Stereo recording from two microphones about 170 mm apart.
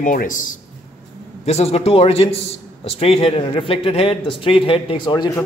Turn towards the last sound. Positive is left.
turn(degrees=25)  # may be behind; listen again after turning